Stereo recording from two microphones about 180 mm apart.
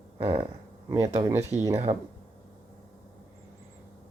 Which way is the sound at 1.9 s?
30° right (ahead or behind).